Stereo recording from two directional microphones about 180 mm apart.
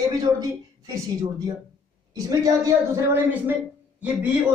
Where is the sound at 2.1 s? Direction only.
20° right (ahead or behind).